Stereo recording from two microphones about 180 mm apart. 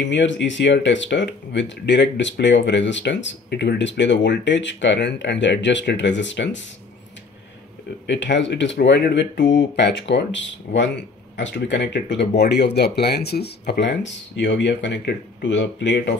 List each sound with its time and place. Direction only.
0.0 s speech: 85° left
8.1 s speech: 85° left